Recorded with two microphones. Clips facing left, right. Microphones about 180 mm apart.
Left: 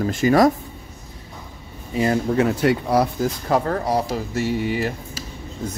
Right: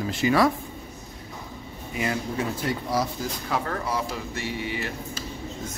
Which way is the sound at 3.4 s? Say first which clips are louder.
Left 7 dB; 40° left (ahead or behind).